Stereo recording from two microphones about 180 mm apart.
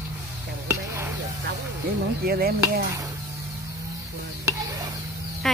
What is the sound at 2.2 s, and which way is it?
Speech, 60° right (ahead or behind).